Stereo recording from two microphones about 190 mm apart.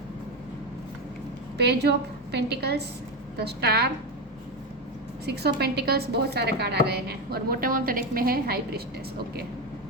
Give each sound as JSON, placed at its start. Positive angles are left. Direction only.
{"t": 1.5, "sound": "a woman's voice", "side_deg": -60}
{"t": 5.2, "sound": "a woman's voice", "side_deg": -60}